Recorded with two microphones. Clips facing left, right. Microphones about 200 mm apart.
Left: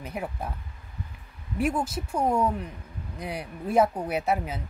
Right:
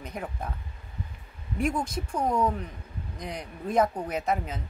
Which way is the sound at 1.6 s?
5° left (ahead or behind).